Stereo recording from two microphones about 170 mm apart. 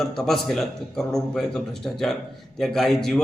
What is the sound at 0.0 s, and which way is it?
A man's voice, centre (ahead or behind).